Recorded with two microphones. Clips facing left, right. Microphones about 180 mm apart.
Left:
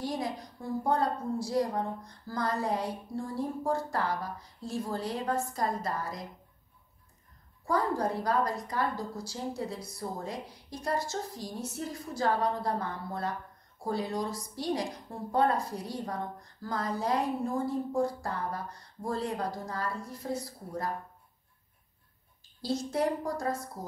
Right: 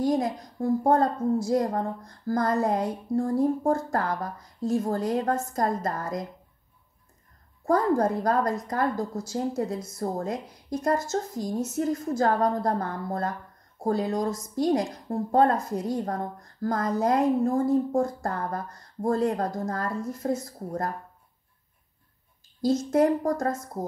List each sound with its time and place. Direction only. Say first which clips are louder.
0.0 s a woman's voice: right 9 dB; 45° right (ahead or behind)
7.6 s a woman's voice: right 7 dB; 45° right (ahead or behind)
22.6 s a woman's voice: right 8 dB; 45° right (ahead or behind)